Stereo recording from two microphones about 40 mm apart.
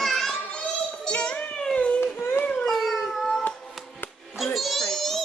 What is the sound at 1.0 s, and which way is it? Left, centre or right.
Child singing, left.